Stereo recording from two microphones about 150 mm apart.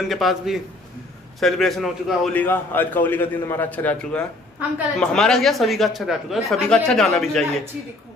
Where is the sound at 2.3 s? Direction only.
15° left (ahead or behind).